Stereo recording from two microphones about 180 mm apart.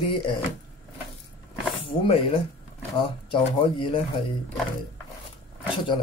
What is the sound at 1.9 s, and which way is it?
Speech, 30° left (ahead or behind).